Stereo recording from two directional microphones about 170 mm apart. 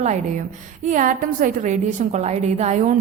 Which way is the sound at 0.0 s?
45° right (ahead or behind).